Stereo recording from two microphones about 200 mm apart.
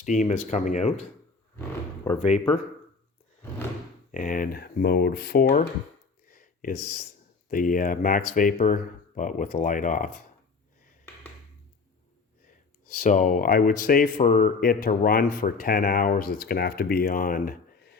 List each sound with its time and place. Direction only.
0.0 s speech: 35° left (ahead or behind)
4.1 s speech: 40° left (ahead or behind)
6.2 s a sound: 45° left (ahead or behind)
7.5 s speech: 40° left (ahead or behind)
13.0 s speech: 40° left (ahead or behind)